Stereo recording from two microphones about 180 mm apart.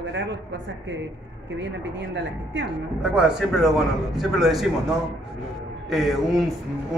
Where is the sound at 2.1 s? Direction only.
80° right.